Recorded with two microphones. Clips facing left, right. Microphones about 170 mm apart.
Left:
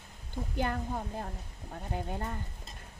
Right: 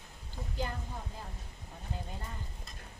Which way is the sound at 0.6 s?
60° left (ahead or behind).